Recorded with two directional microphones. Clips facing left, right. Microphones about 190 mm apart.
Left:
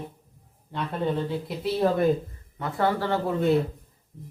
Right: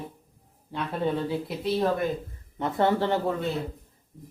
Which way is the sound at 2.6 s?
20° right (ahead or behind).